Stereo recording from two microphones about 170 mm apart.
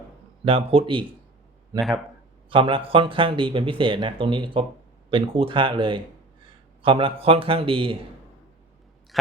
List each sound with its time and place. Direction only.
0.4 s speech: 35° right (ahead or behind)
2.5 s speech: 30° right (ahead or behind)